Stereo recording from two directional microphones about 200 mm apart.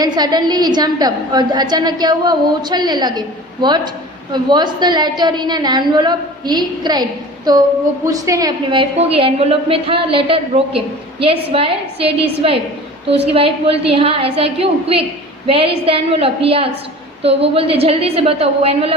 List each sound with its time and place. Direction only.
0.0 s a woman's voice: 20° right (ahead or behind)